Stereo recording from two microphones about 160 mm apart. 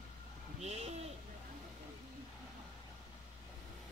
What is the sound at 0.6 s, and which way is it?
Bird, 40° right (ahead or behind).